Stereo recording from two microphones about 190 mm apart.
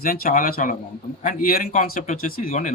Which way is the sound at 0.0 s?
50° left (ahead or behind).